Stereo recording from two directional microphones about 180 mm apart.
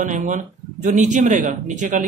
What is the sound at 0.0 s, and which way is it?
A man's voice, 45° right (ahead or behind).